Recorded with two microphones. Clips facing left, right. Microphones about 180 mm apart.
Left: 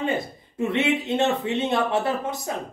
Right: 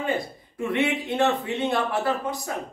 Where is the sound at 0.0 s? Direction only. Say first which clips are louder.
Left 1 dB; 25° left (ahead or behind).